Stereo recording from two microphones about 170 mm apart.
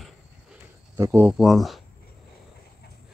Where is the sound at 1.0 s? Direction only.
20° right (ahead or behind).